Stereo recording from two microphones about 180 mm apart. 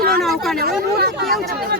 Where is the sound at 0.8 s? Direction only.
60° right (ahead or behind).